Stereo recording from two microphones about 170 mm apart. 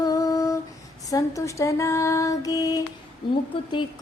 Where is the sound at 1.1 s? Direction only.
20° left (ahead or behind).